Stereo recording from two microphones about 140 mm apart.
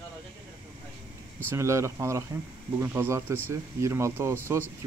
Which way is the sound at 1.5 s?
20° right (ahead or behind).